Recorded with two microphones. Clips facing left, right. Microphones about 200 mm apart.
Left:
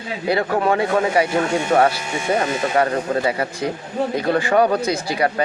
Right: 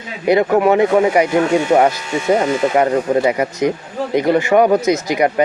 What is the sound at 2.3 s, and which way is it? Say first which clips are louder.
Speech: right 5 dB; 20° right (ahead or behind).